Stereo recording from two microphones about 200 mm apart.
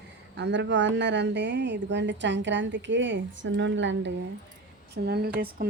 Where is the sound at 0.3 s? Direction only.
60° right (ahead or behind).